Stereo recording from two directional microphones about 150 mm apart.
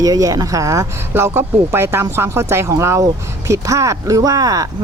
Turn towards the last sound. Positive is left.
turn(degrees=-25)  # may be behind; listen again after turning